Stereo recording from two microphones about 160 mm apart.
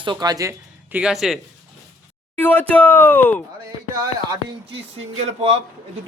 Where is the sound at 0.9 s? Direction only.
5° right (ahead or behind).